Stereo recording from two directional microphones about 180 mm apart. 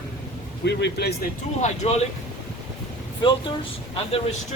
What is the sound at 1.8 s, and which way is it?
Speech, 35° left (ahead or behind).